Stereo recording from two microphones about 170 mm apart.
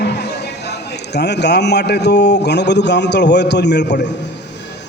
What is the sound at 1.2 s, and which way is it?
Speech, 85° left.